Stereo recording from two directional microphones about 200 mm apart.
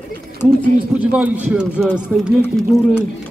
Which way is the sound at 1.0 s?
5° right (ahead or behind).